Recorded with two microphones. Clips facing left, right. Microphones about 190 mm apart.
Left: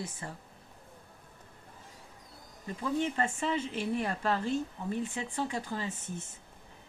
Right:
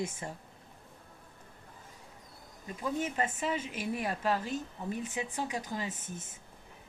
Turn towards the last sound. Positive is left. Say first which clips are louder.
# left 1 dB
turn(degrees=-10)  # may be behind; listen again after turning